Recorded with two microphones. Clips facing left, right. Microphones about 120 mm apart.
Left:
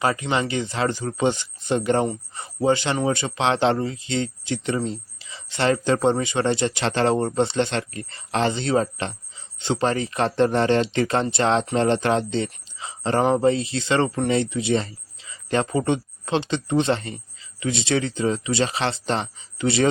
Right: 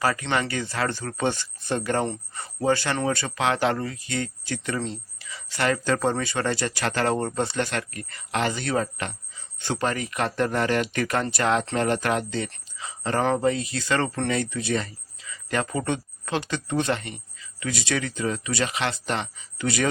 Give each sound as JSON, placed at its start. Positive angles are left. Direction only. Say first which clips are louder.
{"t": 0.0, "sound": "speech", "louder": "left 2 dB", "side_deg": 20}